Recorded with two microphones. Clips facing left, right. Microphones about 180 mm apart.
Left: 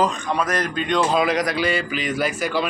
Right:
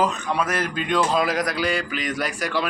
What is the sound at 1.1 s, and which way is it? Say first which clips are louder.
Speech: left 2 dB; centre (ahead or behind).